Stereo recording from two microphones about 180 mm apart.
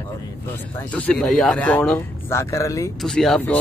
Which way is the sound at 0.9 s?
5° left (ahead or behind).